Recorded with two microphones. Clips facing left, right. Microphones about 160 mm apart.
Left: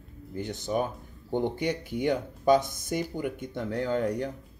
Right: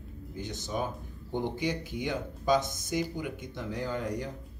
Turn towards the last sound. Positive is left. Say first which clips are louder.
# left 5 dB
turn(degrees=60)  # may be behind; listen again after turning